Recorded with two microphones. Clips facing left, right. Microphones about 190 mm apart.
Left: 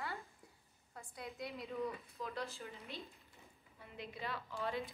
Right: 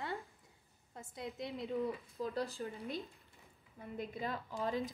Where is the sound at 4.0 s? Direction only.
45° right (ahead or behind).